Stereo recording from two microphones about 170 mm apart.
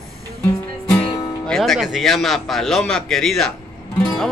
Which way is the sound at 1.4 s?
Centre (ahead or behind).